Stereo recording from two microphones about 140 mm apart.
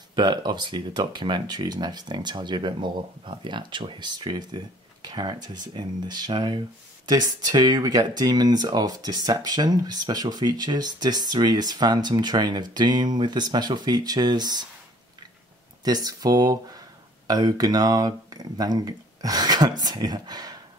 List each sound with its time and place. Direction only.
0.1 s speech: 30° right (ahead or behind)
15.8 s speech: 30° right (ahead or behind)